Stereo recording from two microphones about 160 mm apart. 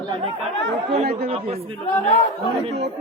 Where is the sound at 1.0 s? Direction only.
80° right.